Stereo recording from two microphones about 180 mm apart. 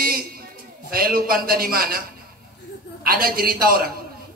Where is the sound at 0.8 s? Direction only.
55° right (ahead or behind).